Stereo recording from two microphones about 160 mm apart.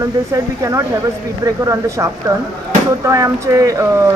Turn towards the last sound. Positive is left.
turn(degrees=-20)  # may be behind; listen again after turning